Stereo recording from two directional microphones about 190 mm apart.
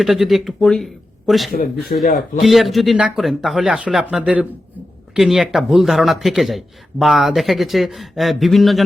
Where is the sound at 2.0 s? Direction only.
45° left (ahead or behind).